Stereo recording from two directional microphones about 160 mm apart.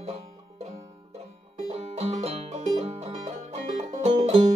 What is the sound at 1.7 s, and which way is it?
Music, 45° right (ahead or behind).